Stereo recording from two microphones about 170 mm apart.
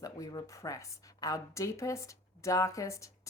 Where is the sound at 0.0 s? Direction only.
20° left (ahead or behind).